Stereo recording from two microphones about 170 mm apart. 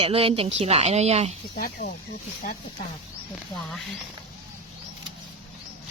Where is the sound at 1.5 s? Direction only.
50° left (ahead or behind).